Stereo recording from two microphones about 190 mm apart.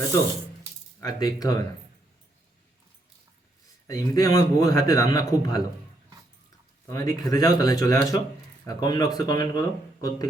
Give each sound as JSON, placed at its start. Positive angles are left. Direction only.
{"t": 1.0, "sound": "speech", "side_deg": 20}
{"t": 3.8, "sound": "a man's voice", "side_deg": 15}
{"t": 6.8, "sound": "a man's voice", "side_deg": 15}